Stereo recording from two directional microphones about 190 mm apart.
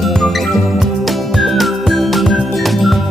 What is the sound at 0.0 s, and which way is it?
Music, centre (ahead or behind).